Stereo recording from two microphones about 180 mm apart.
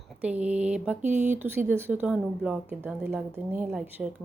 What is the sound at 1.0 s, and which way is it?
Speech, 40° right (ahead or behind).